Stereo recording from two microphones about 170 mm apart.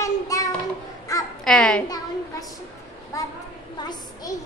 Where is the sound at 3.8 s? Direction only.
25° left (ahead or behind).